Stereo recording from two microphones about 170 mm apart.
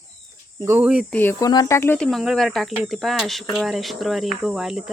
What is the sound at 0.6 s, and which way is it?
Cricket, 10° right (ahead or behind).